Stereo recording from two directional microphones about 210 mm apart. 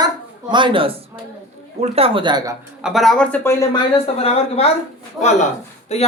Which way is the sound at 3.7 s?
30° left (ahead or behind).